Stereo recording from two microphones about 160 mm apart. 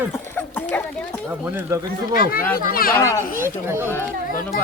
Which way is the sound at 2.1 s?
65° left (ahead or behind).